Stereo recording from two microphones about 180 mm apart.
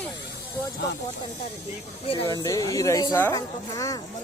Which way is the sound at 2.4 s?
20° left (ahead or behind).